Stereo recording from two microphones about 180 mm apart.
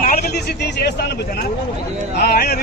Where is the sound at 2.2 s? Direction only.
60° left (ahead or behind).